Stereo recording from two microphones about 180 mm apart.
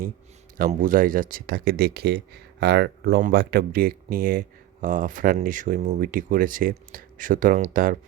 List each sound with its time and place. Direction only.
0.7 s speech: 45° right (ahead or behind)